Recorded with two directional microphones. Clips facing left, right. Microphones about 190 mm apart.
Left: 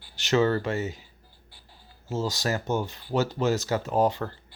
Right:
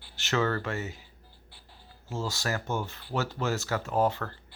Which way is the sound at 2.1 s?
20° left (ahead or behind).